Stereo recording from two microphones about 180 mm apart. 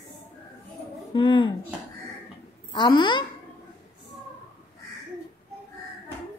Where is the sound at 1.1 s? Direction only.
25° left (ahead or behind).